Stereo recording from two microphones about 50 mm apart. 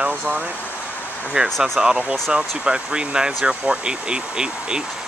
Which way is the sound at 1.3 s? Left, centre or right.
Right.